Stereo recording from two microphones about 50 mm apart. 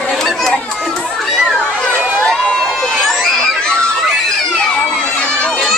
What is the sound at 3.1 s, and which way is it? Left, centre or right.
Crowd, centre.